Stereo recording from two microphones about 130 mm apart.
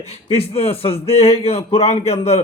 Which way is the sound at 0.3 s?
50° left (ahead or behind).